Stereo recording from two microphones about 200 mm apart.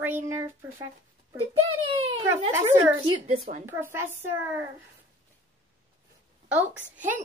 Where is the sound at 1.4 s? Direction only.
25° right (ahead or behind).